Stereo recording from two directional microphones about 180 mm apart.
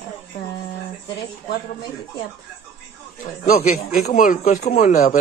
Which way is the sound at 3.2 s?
50° left (ahead or behind).